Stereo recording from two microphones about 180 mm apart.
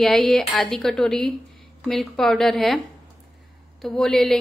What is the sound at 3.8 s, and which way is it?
Speech, 5° left (ahead or behind).